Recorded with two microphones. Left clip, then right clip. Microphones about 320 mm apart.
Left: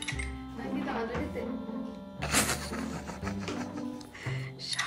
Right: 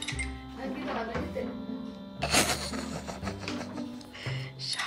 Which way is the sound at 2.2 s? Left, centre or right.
Centre.